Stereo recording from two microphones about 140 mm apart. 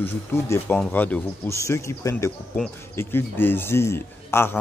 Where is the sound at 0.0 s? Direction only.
15° left (ahead or behind).